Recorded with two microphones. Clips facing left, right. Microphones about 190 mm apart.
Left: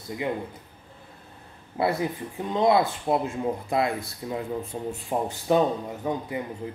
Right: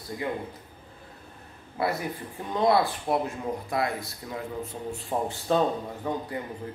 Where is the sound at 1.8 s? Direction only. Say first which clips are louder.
Left 3 dB; 25° left (ahead or behind).